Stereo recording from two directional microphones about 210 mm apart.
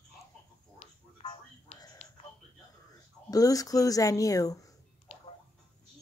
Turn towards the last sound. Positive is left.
turn(degrees=30)  # may be behind; listen again after turning